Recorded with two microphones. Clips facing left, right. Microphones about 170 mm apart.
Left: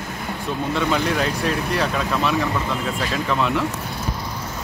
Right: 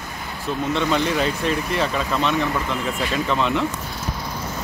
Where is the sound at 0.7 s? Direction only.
Centre (ahead or behind).